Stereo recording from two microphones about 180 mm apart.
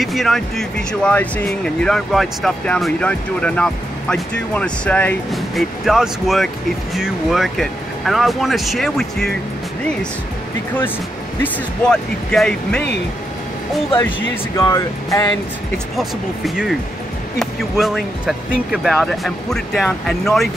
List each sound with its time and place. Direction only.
0.0 s speech: centre (ahead or behind)
11.4 s speech: 5° left (ahead or behind)
14.6 s speech: 15° left (ahead or behind)
16.0 s speech: centre (ahead or behind)